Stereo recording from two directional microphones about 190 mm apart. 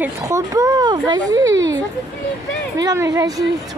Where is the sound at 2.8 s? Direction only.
20° right (ahead or behind).